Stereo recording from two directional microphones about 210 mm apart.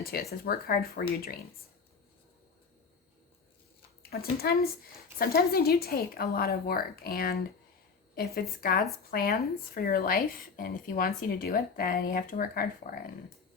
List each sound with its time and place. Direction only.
0.0 s speech: 45° left (ahead or behind)
4.1 s speech: 45° left (ahead or behind)